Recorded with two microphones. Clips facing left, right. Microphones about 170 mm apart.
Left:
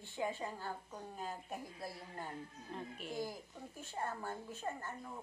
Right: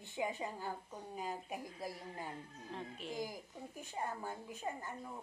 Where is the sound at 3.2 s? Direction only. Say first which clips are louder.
Even; 15° right (ahead or behind).